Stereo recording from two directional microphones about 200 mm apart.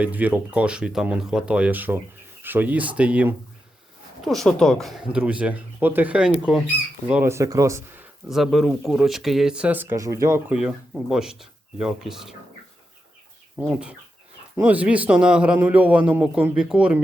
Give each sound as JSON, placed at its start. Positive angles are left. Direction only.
{"t": 0.0, "sound": "a man's voice", "side_deg": -10}
{"t": 8.3, "sound": "speech", "side_deg": 0}
{"t": 10.5, "sound": "speech", "side_deg": -5}
{"t": 13.6, "sound": "a man's voice", "side_deg": -5}